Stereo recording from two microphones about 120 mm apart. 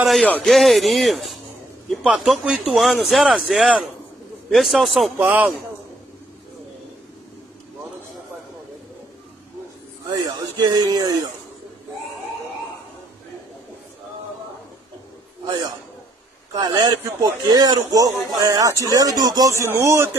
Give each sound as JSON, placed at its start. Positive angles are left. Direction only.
{"t": 0.0, "sound": "a man's voice", "side_deg": 0}
{"t": 4.5, "sound": "a man's voice", "side_deg": 0}
{"t": 5.2, "sound": "a man's voice", "side_deg": -15}
{"t": 10.0, "sound": "speech", "side_deg": -35}
{"t": 15.4, "sound": "a man's voice", "side_deg": -40}